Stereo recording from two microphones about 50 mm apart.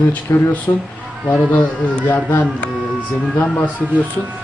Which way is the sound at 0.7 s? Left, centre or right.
Left.